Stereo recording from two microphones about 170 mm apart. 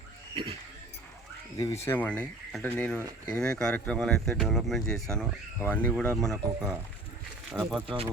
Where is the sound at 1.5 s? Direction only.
20° left (ahead or behind).